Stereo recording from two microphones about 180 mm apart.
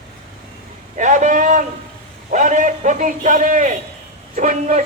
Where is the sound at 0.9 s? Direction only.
45° right (ahead or behind).